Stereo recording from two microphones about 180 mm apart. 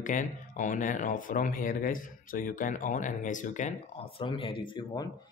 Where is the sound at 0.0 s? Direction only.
45° left (ahead or behind).